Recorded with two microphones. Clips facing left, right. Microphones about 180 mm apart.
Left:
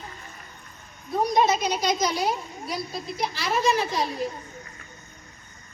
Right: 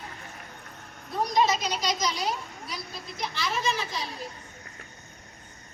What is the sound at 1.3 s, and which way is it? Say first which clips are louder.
Speech: left 2 dB; 55° left (ahead or behind).